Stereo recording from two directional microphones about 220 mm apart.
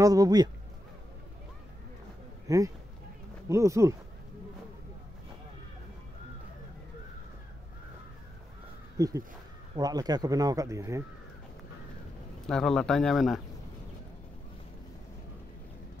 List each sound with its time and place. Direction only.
0.0 s speech: 15° right (ahead or behind)
2.4 s speech: 15° right (ahead or behind)
8.9 s speech: 15° right (ahead or behind)
12.4 s speech: 5° left (ahead or behind)